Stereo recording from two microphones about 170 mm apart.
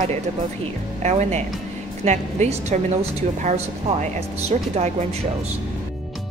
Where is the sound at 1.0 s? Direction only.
40° right (ahead or behind).